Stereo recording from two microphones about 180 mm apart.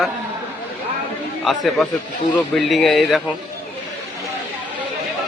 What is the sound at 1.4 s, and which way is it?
Speech, centre (ahead or behind).